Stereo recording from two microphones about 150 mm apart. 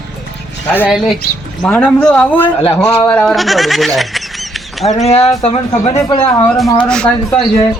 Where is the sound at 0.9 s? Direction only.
5° right (ahead or behind).